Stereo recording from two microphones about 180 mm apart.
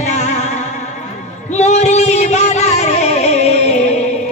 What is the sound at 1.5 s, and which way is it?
Music, 40° left (ahead or behind).